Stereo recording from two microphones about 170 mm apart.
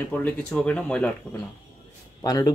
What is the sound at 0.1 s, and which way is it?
Speech, 10° left (ahead or behind).